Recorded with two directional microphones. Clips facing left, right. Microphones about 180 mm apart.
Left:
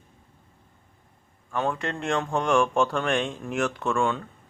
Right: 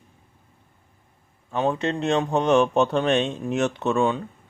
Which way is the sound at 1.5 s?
20° right (ahead or behind).